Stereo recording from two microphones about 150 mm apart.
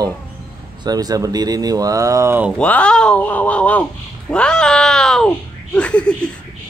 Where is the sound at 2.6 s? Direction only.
10° left (ahead or behind).